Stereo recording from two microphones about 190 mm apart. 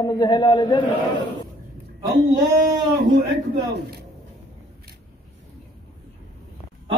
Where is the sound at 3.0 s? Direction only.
45° right (ahead or behind).